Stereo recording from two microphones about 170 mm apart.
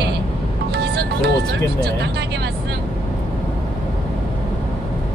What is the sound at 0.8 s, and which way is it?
Music, 70° right (ahead or behind).